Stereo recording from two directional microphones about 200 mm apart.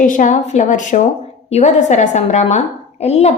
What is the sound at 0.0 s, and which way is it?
A woman's voice, 40° left (ahead or behind).